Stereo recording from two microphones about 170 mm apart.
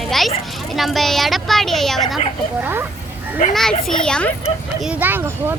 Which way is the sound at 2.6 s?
10° right (ahead or behind).